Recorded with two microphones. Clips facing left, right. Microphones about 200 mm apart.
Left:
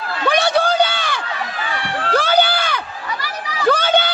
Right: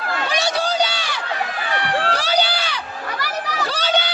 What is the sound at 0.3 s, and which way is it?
Run, 55° left (ahead or behind).